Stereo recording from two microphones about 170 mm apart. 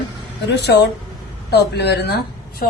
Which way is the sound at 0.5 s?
85° left.